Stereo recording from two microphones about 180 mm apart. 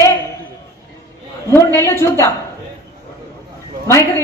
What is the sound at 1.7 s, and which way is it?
Speech, 15° left (ahead or behind).